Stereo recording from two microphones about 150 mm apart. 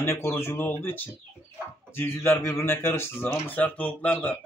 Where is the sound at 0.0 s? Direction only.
20° left (ahead or behind).